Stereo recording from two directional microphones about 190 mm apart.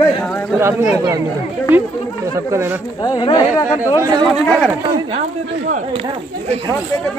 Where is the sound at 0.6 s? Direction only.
15° right (ahead or behind).